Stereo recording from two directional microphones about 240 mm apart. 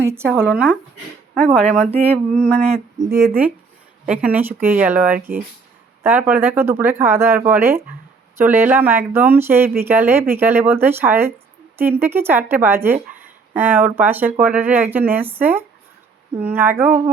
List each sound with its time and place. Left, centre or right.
0.0 s speech: centre
1.8 s a sound: right
2.4 s speech: centre
3.2 s speech: centre